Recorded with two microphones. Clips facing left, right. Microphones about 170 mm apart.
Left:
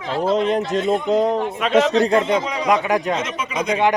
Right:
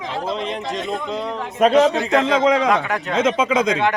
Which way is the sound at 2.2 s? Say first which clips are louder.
Right 5 dB; 90° right.